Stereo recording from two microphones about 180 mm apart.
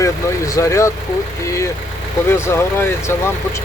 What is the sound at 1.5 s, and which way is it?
Speech, 15° left (ahead or behind).